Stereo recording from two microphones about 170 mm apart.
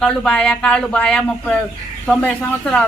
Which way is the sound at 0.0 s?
5° left (ahead or behind).